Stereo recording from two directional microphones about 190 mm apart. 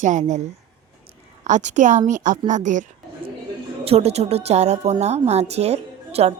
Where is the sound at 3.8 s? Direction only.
35° right (ahead or behind).